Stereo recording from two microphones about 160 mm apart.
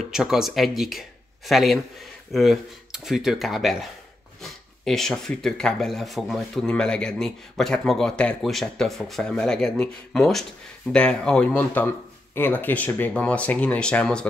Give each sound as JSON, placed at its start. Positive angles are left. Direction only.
{"t": 0.1, "sound": "speech", "side_deg": -5}